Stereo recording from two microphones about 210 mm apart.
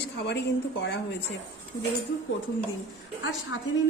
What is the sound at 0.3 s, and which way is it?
Speech, 55° left (ahead or behind).